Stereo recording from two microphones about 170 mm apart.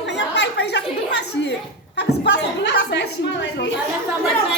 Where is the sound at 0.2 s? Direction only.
85° left.